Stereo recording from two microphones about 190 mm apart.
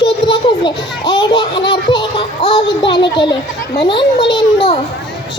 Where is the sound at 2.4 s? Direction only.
35° left (ahead or behind).